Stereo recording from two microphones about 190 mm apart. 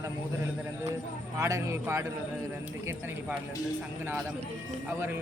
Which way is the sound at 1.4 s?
15° right (ahead or behind).